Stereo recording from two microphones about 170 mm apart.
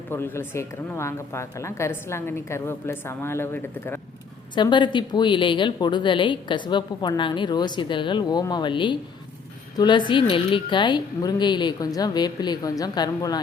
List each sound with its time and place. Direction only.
0.1 s speech: 15° left (ahead or behind)
4.5 s a woman's voice: 25° left (ahead or behind)